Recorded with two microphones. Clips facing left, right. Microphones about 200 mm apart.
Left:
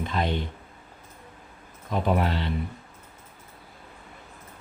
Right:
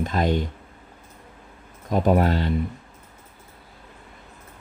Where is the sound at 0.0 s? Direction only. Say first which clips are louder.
Right 5 dB; 45° right (ahead or behind).